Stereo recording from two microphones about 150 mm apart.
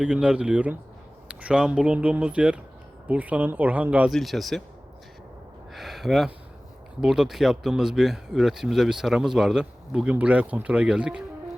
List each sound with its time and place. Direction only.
0.0 s speech: 5° right (ahead or behind)
4.1 s speech: centre (ahead or behind)
5.7 s a sound: centre (ahead or behind)
7.0 s speech: 5° right (ahead or behind)